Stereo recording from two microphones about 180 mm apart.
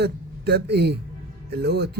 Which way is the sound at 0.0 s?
65° right (ahead or behind).